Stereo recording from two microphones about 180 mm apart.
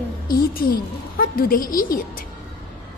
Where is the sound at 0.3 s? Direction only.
55° left (ahead or behind).